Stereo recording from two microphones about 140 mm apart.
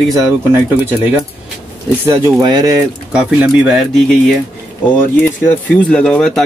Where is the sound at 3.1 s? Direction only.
10° right (ahead or behind).